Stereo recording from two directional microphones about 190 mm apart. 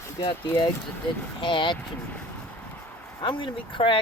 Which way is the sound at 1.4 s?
25° left (ahead or behind).